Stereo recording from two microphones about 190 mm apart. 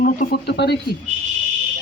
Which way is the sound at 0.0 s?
50° left (ahead or behind).